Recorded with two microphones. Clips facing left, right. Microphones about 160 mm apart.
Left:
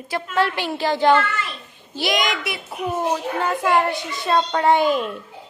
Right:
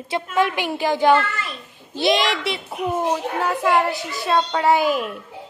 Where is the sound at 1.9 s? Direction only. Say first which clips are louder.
Right 3 dB; 25° right (ahead or behind).